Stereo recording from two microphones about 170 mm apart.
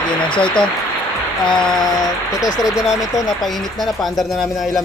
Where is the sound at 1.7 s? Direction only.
25° left (ahead or behind).